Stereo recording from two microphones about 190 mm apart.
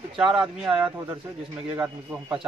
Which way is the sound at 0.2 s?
5° right (ahead or behind).